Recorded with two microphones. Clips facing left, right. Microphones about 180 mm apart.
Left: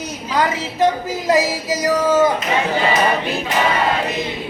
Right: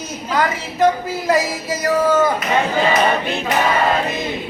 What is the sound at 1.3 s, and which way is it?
Music, 20° left (ahead or behind).